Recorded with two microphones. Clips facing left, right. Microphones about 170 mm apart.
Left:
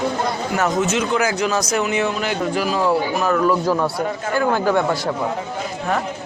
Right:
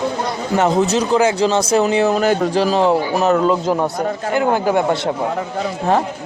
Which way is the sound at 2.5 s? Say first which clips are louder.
Right 4 dB; 30° right (ahead or behind).